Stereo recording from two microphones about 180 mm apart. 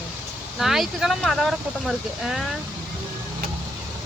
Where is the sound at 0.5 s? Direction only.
Centre (ahead or behind).